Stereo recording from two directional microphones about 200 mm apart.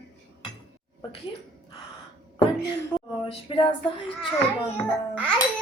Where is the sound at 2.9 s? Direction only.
25° left (ahead or behind).